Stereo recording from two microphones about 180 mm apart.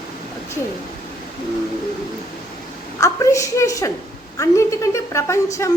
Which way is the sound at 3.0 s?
15° left (ahead or behind).